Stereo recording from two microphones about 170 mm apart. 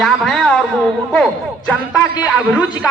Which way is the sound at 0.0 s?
5° left (ahead or behind).